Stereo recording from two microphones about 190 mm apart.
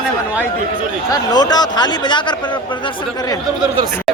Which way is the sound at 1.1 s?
20° left (ahead or behind).